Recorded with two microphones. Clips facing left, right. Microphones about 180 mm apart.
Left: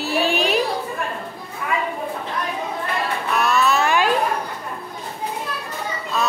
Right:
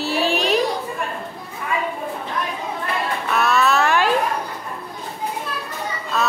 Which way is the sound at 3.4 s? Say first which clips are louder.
Right 1 dB; centre (ahead or behind).